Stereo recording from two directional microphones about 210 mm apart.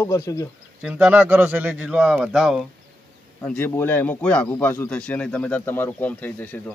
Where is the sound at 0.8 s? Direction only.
5° right (ahead or behind).